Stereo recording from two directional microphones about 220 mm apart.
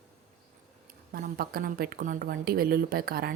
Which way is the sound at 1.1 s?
40° right (ahead or behind).